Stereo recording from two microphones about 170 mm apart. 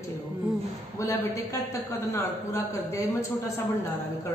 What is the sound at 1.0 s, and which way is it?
A man's voice, 20° left (ahead or behind).